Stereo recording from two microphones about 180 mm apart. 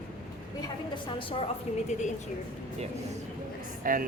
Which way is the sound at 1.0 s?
30° left (ahead or behind).